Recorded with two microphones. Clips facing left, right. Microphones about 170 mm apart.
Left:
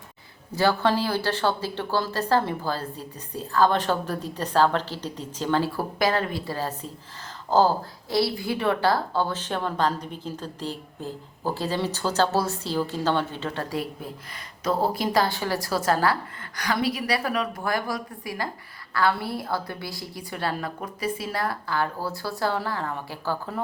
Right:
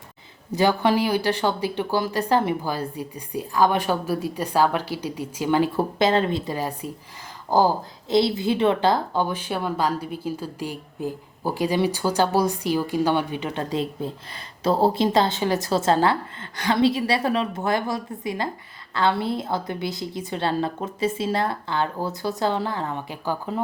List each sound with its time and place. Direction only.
0.5 s a woman's voice: 15° right (ahead or behind)